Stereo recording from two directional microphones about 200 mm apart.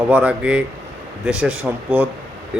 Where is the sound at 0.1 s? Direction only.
5° right (ahead or behind).